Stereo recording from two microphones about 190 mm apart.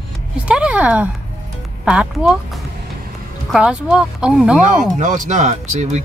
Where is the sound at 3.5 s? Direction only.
5° right (ahead or behind).